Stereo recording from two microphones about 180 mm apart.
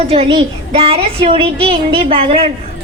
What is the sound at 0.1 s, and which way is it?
A woman's voice, 30° right (ahead or behind).